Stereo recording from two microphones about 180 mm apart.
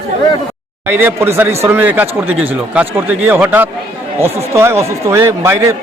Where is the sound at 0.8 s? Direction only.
10° right (ahead or behind).